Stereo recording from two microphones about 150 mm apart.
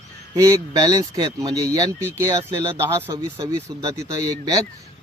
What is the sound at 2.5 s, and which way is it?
Speech, 20° right (ahead or behind).